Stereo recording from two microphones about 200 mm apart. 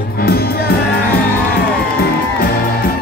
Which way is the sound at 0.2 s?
50° left (ahead or behind).